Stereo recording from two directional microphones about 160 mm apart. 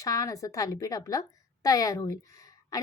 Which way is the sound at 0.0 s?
20° left (ahead or behind).